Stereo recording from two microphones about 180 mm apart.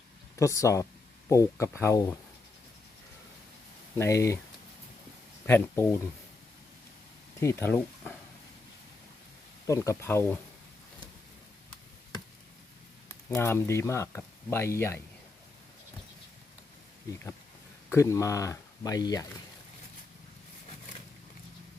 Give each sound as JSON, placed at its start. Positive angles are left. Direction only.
{"t": 0.3, "sound": "speech", "side_deg": 15}
{"t": 3.9, "sound": "speech", "side_deg": 15}
{"t": 5.5, "sound": "speech", "side_deg": 10}
{"t": 7.3, "sound": "speech", "side_deg": 15}
{"t": 9.6, "sound": "speech", "side_deg": 15}
{"t": 13.3, "sound": "speech", "side_deg": 15}
{"t": 17.8, "sound": "speech", "side_deg": 15}